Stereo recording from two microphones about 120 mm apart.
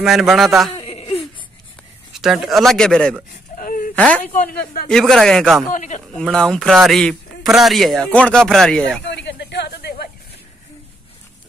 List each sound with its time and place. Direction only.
0.0 s speech: centre (ahead or behind)
0.7 s a sound: 55° left (ahead or behind)
2.1 s speech: 5° right (ahead or behind)
5.7 s a man's voice: 85° left
6.1 s speech: 5° left (ahead or behind)